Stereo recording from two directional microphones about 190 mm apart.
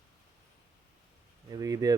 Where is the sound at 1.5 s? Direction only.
20° right (ahead or behind).